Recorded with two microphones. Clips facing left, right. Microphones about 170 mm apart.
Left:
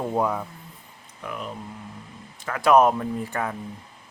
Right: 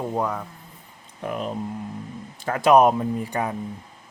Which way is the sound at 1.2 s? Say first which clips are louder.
Right 6 dB; 35° right (ahead or behind).